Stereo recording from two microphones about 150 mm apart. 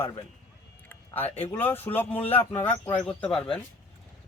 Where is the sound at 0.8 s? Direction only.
10° left (ahead or behind).